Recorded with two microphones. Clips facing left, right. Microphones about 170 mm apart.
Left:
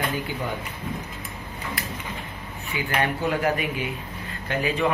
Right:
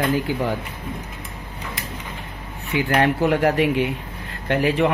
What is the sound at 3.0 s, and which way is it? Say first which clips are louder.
Speech: right 6 dB; 70° right (ahead or behind).